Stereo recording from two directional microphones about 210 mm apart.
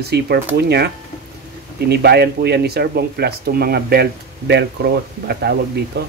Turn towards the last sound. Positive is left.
turn(degrees=-50)  # may be behind; listen again after turning